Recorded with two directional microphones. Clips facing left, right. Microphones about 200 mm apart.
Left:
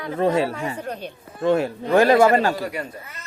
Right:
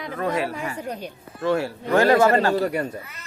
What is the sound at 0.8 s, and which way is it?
Speech, 10° right (ahead or behind).